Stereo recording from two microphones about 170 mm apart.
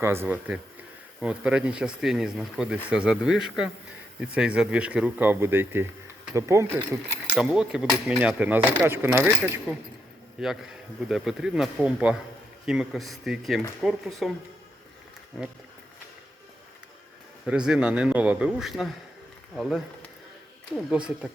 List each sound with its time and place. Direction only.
0.0 s speech: 15° right (ahead or behind)
7.3 s speech: 5° right (ahead or behind)
17.4 s speech: 5° right (ahead or behind)
20.7 s speech: 5° right (ahead or behind)